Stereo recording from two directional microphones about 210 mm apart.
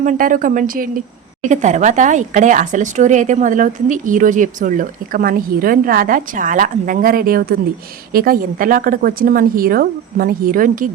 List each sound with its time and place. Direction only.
0.0 s speech: 40° right (ahead or behind)